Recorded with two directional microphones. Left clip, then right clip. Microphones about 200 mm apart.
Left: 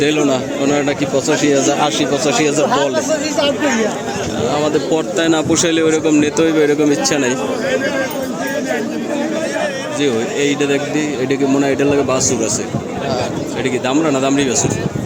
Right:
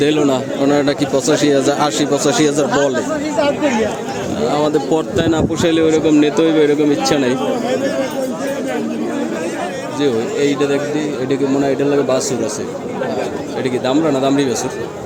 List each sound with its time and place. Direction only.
0.0 s a man's voice: 20° right (ahead or behind)
2.9 s speech: 55° left (ahead or behind)
4.6 s a man's voice: 20° right (ahead or behind)
5.2 s a man's voice: 5° right (ahead or behind)
10.0 s a man's voice: centre (ahead or behind)
13.8 s a man's voice: 5° right (ahead or behind)